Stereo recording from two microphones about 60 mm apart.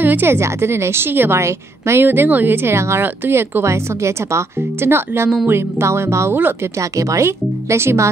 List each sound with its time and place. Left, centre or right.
0.0 s a woman's voice: right
0.4 s speech: right
1.4 s speech: right
2.0 s speech: right
6.8 s speech: right